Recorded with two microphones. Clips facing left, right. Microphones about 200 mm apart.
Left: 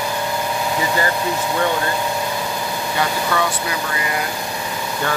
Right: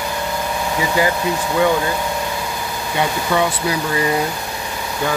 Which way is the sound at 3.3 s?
20° right (ahead or behind).